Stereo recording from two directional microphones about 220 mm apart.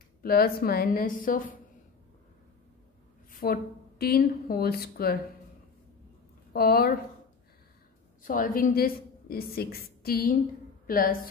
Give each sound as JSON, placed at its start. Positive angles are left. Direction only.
{"t": 0.2, "sound": "a woman's voice", "side_deg": 45}
{"t": 3.3, "sound": "a sound", "side_deg": 40}
{"t": 4.0, "sound": "a woman's voice", "side_deg": 45}
{"t": 6.5, "sound": "a woman's voice", "side_deg": 45}
{"t": 8.2, "sound": "a woman's voice", "side_deg": 35}